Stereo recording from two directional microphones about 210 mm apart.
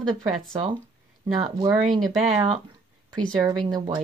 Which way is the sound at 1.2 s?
30° right (ahead or behind).